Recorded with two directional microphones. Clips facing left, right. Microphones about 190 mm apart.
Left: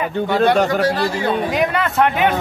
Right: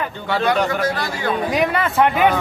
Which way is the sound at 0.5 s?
35° left (ahead or behind).